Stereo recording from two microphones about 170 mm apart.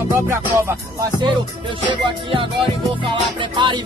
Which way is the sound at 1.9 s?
30° right (ahead or behind).